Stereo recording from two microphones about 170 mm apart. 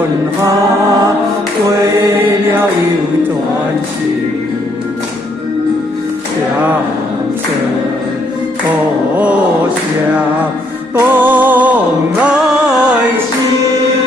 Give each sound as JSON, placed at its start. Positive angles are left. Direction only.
{"t": 1.9, "sound": "mantra", "side_deg": -15}
{"t": 11.0, "sound": "music", "side_deg": -10}